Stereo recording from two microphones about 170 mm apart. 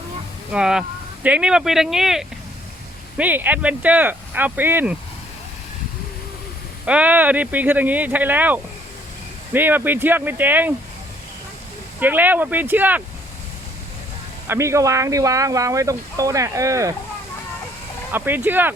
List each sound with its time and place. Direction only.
0.5 s speech: 5° right (ahead or behind)
6.8 s speech: 10° right (ahead or behind)
11.9 s speech: 10° right (ahead or behind)
14.4 s speech: 15° right (ahead or behind)
18.1 s speech: 10° right (ahead or behind)